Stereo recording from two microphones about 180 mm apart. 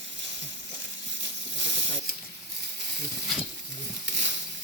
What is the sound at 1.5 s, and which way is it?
Snake, 80° right.